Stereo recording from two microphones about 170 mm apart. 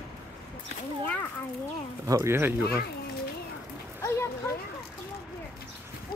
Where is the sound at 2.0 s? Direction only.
15° right (ahead or behind).